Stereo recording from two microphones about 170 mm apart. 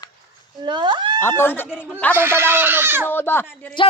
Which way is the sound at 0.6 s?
25° right (ahead or behind).